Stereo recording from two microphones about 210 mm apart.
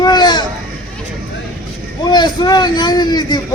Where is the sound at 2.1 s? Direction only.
20° left (ahead or behind).